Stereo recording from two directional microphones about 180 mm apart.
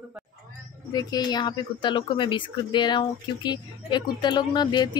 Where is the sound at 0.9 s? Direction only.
20° left (ahead or behind).